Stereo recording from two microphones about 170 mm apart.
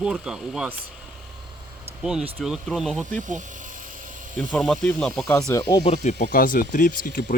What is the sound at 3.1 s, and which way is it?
Speech, 50° right (ahead or behind).